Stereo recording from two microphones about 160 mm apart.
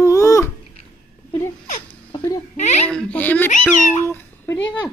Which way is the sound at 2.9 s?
5° left (ahead or behind).